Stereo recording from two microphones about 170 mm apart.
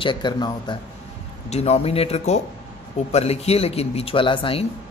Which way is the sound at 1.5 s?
40° left (ahead or behind).